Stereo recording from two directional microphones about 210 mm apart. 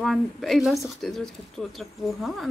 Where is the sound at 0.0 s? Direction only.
Centre (ahead or behind).